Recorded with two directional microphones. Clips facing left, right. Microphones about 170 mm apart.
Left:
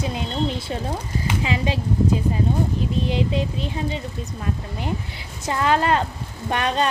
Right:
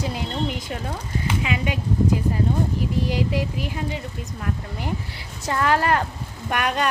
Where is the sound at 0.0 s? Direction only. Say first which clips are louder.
Left 2 dB; 20° left (ahead or behind).